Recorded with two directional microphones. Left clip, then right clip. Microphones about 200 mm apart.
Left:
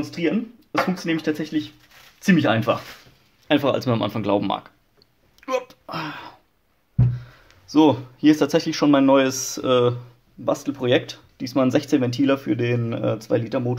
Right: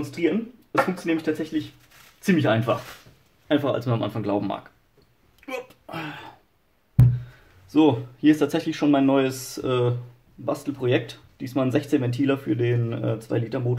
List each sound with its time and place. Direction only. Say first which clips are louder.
0.1 s speech: right 2 dB; 45° left (ahead or behind); by 4.6 s 30° left (ahead or behind)
5.7 s a sound: left 4 dB; 25° left (ahead or behind)
7.7 s speech: left 3 dB; 30° left (ahead or behind)